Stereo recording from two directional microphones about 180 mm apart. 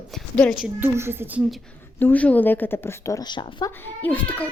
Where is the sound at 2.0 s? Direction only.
10° left (ahead or behind); by 3.7 s 25° left (ahead or behind).